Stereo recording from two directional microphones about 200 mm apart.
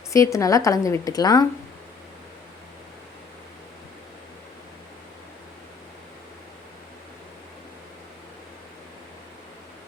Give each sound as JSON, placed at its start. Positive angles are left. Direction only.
{"t": 0.1, "sound": "a woman's voice", "side_deg": 15}